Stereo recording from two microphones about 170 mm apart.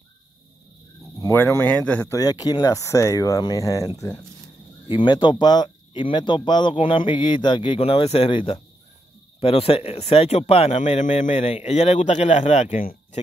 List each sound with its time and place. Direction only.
1.2 s speech: 15° left (ahead or behind); by 12.8 s 40° left (ahead or behind)